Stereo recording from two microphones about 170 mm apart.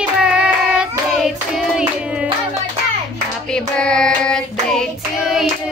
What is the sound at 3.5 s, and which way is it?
Child singing, 5° left (ahead or behind).